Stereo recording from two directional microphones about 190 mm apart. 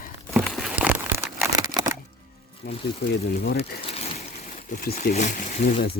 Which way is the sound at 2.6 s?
55° left (ahead or behind).